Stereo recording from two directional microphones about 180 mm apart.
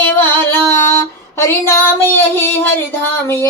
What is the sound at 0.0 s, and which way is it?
Female singing, 10° left (ahead or behind).